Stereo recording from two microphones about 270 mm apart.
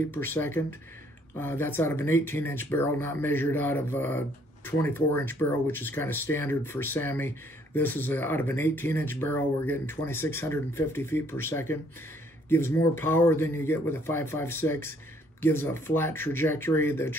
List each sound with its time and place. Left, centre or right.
0.1 s speech: centre